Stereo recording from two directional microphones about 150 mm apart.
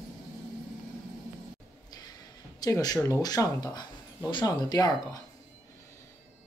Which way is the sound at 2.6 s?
25° left (ahead or behind).